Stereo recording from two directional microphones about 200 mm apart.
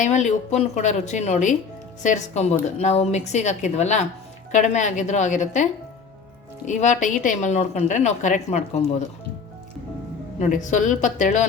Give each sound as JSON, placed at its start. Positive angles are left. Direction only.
{"t": 0.0, "sound": "a woman's voice", "side_deg": 35}
{"t": 6.7, "sound": "a woman's voice", "side_deg": 35}
{"t": 10.3, "sound": "a woman's voice", "side_deg": 40}